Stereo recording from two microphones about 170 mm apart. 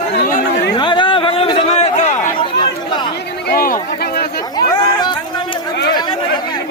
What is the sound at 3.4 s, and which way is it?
Chatter, 60° left (ahead or behind).